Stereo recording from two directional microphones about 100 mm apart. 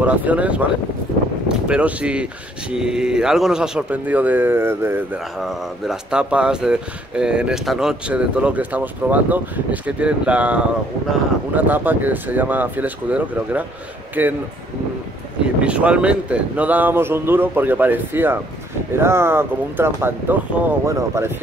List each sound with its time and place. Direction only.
0.0 s speech: 15° right (ahead or behind)
1.7 s speech: 15° right (ahead or behind)
5.4 s speech: 5° right (ahead or behind)
15.6 s speech: 10° right (ahead or behind); by 21.3 s 25° right (ahead or behind)